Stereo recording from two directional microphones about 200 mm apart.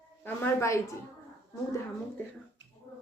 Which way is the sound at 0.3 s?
10° left (ahead or behind).